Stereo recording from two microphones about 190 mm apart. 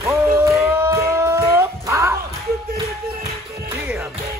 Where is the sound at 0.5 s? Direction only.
10° right (ahead or behind).